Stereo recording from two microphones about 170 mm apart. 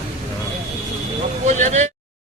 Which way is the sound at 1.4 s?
45° right (ahead or behind).